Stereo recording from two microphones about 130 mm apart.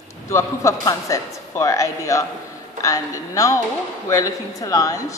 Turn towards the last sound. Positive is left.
turn(degrees=25)  # may be behind; listen again after turning